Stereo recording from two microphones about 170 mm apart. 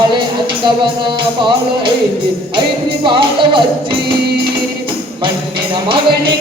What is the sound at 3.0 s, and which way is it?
Music, 30° right (ahead or behind).